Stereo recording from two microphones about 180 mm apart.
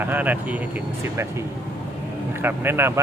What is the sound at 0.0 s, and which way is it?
Speech, 10° right (ahead or behind).